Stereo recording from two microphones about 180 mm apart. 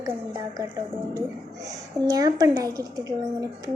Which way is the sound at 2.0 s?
20° right (ahead or behind).